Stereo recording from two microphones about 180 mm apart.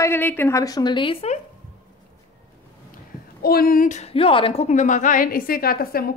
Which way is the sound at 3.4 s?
55° left (ahead or behind).